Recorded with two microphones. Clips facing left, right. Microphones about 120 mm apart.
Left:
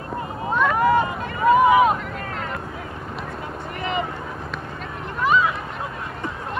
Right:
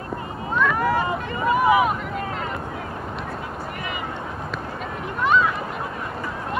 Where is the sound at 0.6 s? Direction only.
20° left (ahead or behind).